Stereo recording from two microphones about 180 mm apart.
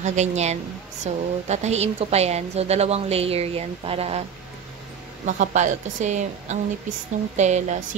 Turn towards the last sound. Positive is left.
turn(degrees=-40)  # may be behind; listen again after turning